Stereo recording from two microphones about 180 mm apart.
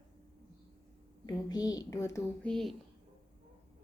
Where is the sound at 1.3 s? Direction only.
20° left (ahead or behind).